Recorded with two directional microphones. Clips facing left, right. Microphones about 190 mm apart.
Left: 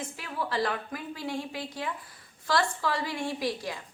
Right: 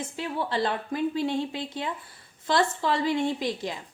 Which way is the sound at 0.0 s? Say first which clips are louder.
Right 4 dB; 25° right (ahead or behind).